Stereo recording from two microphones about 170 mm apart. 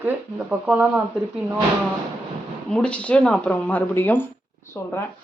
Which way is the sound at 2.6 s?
5° left (ahead or behind).